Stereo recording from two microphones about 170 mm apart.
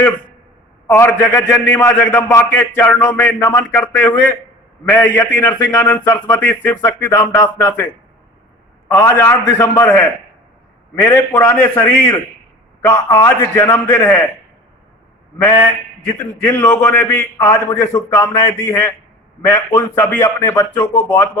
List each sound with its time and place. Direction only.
0.9 s a man's voice: 15° left (ahead or behind)
8.9 s a man's voice: 15° left (ahead or behind)
16.1 s a man's voice: 10° left (ahead or behind)